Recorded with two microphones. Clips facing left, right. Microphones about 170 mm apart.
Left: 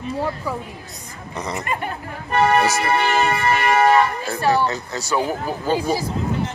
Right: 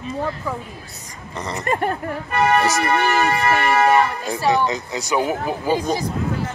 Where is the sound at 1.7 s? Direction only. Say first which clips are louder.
Right 9 dB; 45° right (ahead or behind).